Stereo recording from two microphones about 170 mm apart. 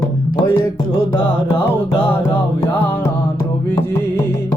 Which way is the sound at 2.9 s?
15° left (ahead or behind).